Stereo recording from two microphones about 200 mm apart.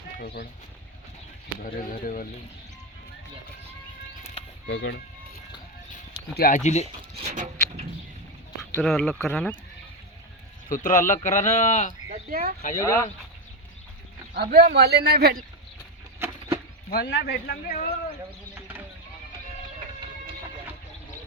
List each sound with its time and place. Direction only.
1.6 s speech: 45° left (ahead or behind)
4.6 s speech: 60° left (ahead or behind)
6.3 s speech: 45° left (ahead or behind)
6.8 s a sound: 35° right (ahead or behind)
8.7 s speech: 5° left (ahead or behind)
10.7 s speech: 40° left (ahead or behind)
12.3 s a man's voice: 50° right (ahead or behind)
12.8 s speech: 15° left (ahead or behind)
14.3 s a man's voice: 50° right (ahead or behind)
16.2 s a sound: 10° right (ahead or behind)
16.9 s speech: 55° left (ahead or behind)
18.5 s sheep: 10° right (ahead or behind)